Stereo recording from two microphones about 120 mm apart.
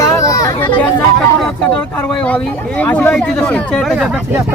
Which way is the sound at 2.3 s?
10° left (ahead or behind).